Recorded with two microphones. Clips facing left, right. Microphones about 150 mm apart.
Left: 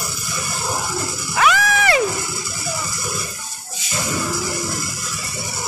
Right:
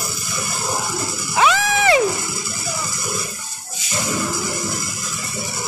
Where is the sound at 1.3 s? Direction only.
25° right (ahead or behind).